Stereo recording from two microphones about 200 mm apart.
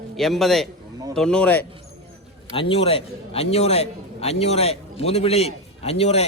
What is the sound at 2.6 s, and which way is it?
A man's voice, 25° left (ahead or behind).